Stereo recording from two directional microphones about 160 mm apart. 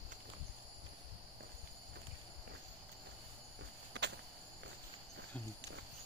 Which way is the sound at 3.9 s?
90° right.